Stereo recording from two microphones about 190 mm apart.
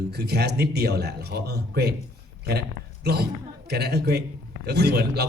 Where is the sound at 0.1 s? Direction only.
60° right (ahead or behind).